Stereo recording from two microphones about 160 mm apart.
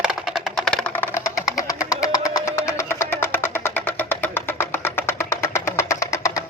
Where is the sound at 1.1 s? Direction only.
20° left (ahead or behind).